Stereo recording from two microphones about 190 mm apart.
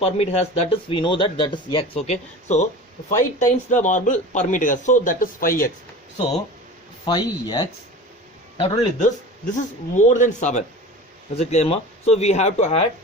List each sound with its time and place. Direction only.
0.0 s speech: 35° left (ahead or behind)
7.0 s speech: 20° left (ahead or behind)